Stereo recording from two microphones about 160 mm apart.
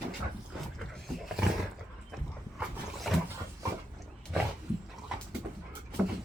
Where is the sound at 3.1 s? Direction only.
Centre (ahead or behind).